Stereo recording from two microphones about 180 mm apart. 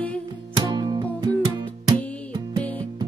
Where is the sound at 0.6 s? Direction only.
25° right (ahead or behind).